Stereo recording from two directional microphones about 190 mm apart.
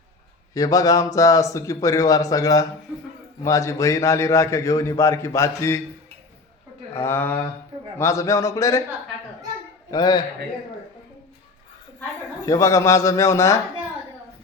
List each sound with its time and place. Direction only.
0.5 s a man's voice: 20° left (ahead or behind)
6.9 s a man's voice: 10° left (ahead or behind)
9.9 s a man's voice: 20° left (ahead or behind)
12.5 s a man's voice: 15° left (ahead or behind)